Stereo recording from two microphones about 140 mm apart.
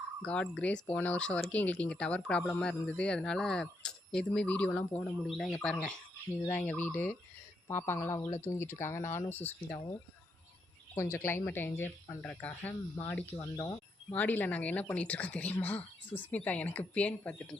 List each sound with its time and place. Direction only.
0.3 s speech: 10° left (ahead or behind)
10.9 s speech: 20° left (ahead or behind)
13.4 s speech: 25° left (ahead or behind)
14.1 s speech: 15° left (ahead or behind)